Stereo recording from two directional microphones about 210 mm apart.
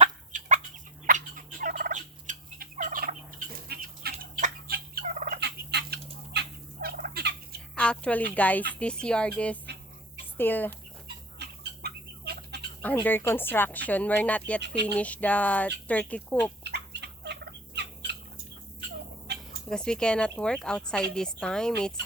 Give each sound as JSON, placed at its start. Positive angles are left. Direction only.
{"t": 0.0, "sound": "fowl", "side_deg": -35}
{"t": 3.7, "sound": "a sound", "side_deg": -50}
{"t": 4.2, "sound": "gobble", "side_deg": -40}
{"t": 7.8, "sound": "speech", "side_deg": 5}
{"t": 11.3, "sound": "bird", "side_deg": -50}
{"t": 12.8, "sound": "speech", "side_deg": 10}
{"t": 16.6, "sound": "fowl", "side_deg": -55}
{"t": 19.3, "sound": "a sound", "side_deg": -55}
{"t": 19.7, "sound": "speech", "side_deg": 5}